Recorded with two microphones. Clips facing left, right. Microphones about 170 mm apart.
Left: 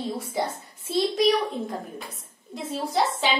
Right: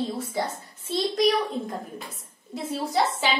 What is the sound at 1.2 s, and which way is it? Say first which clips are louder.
A woman's voice: right 1 dB; centre (ahead or behind).